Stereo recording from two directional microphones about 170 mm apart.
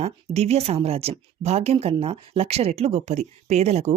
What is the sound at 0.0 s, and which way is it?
Speech, 35° right (ahead or behind).